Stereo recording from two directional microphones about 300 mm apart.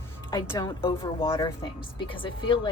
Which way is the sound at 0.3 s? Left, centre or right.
Centre.